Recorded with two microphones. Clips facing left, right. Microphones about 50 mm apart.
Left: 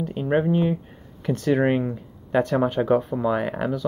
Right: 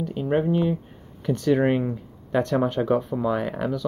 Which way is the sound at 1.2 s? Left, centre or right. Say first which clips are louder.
Even; centre.